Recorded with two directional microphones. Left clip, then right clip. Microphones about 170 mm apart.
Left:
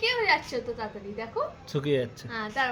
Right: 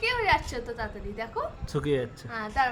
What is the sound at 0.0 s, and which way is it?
A woman's voice, 25° right (ahead or behind).